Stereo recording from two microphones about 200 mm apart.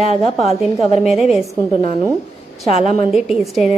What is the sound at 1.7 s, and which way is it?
Speech, 30° left (ahead or behind).